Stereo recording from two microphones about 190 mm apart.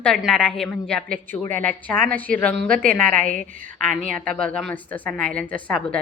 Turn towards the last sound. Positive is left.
turn(degrees=5)  # may be behind; listen again after turning